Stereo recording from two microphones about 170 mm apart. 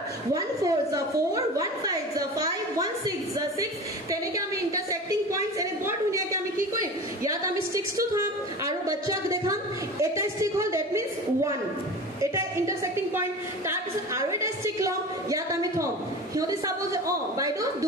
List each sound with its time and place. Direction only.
0.3 s a woman's voice: 20° right (ahead or behind)
5.3 s a sound: 20° right (ahead or behind)
16.3 s a woman's voice: 20° right (ahead or behind)